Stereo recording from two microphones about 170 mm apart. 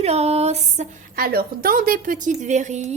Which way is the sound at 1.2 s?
60° right (ahead or behind).